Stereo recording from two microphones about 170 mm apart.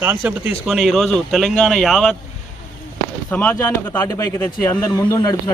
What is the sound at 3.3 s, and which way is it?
A man's voice, 10° left (ahead or behind).